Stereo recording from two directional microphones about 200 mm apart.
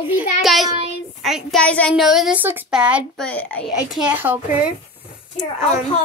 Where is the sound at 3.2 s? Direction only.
5° left (ahead or behind).